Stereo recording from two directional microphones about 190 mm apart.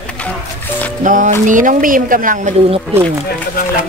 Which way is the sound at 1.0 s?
40° right (ahead or behind).